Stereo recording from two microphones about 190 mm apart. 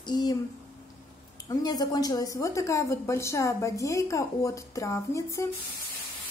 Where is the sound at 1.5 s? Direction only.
20° left (ahead or behind).